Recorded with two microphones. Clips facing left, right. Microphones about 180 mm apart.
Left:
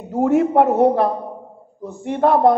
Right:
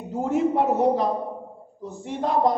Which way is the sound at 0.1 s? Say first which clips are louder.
Left 7 dB; 60° left (ahead or behind).